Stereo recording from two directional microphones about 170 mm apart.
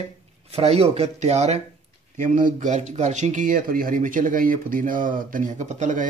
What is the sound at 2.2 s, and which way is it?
Speech, 50° right (ahead or behind).